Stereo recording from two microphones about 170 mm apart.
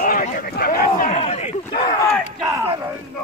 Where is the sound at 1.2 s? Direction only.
40° left (ahead or behind).